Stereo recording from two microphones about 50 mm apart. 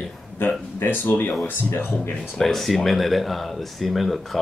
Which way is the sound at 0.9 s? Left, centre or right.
Left.